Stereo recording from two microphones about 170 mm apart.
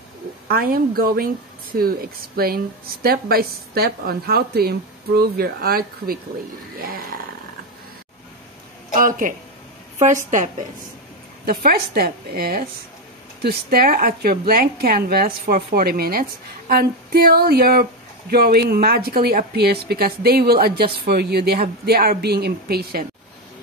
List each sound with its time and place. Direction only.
0.5 s a woman's voice: 60° right (ahead or behind)
8.9 s a woman's voice: 55° right (ahead or behind)
11.4 s a woman's voice: 60° right (ahead or behind)